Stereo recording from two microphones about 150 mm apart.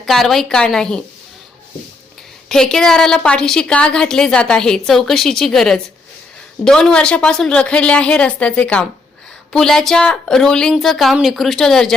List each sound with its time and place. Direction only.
0.0 s a woman's voice: centre (ahead or behind)
2.5 s a woman's voice: 5° left (ahead or behind)